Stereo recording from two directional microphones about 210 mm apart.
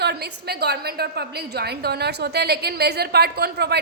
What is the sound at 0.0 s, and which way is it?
A woman's voice, 50° right (ahead or behind).